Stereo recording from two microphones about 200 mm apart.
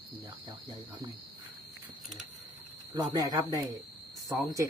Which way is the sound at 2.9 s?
20° right (ahead or behind).